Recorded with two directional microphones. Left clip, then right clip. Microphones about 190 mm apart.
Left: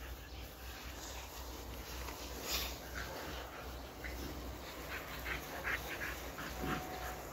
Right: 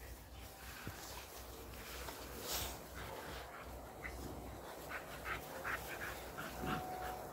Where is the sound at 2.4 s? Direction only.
35° right (ahead or behind).